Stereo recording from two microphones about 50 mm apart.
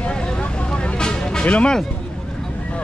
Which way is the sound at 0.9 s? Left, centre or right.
Centre.